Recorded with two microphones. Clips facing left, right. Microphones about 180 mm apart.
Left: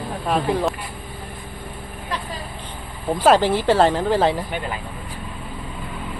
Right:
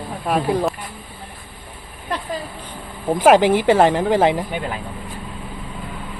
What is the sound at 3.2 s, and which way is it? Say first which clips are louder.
Speech: right 3 dB; 15° right (ahead or behind).